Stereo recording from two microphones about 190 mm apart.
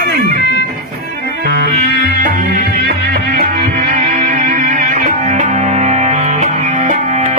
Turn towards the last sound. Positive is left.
turn(degrees=-40)  # may be behind; listen again after turning